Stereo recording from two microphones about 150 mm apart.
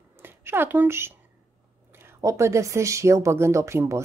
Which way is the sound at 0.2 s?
15° right (ahead or behind).